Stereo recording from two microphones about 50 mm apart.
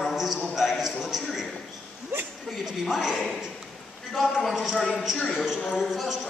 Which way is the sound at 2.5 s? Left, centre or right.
Centre.